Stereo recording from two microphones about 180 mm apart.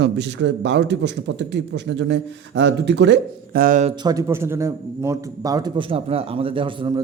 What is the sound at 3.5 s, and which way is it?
Speech, 50° right (ahead or behind).